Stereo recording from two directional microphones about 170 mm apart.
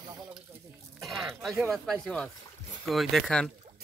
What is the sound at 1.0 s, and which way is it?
Speech, centre (ahead or behind).